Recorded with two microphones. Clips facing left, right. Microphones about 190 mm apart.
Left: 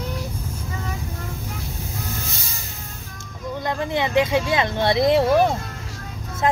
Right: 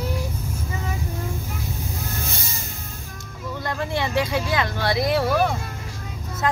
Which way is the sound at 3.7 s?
20° left (ahead or behind).